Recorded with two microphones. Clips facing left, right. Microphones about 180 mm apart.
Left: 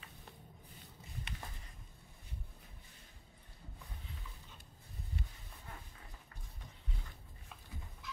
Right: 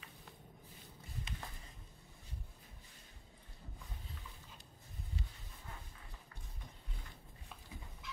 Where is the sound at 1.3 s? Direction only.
65° left (ahead or behind).